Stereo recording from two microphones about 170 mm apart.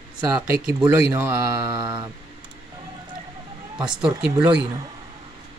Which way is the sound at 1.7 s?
25° right (ahead or behind).